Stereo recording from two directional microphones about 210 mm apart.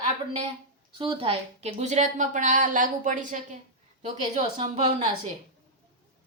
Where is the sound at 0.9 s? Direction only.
25° right (ahead or behind).